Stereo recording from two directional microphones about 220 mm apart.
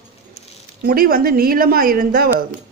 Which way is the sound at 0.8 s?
40° right (ahead or behind).